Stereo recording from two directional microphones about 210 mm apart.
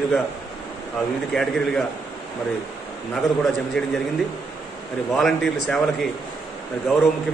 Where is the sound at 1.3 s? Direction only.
Centre (ahead or behind).